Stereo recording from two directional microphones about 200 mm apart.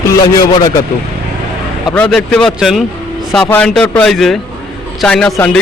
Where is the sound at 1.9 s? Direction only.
5° left (ahead or behind).